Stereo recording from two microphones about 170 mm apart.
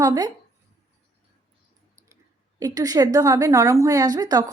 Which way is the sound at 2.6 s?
20° right (ahead or behind).